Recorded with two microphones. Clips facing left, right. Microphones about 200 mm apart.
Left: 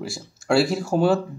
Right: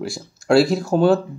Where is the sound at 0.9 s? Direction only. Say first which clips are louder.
Right 3 dB; 30° right (ahead or behind).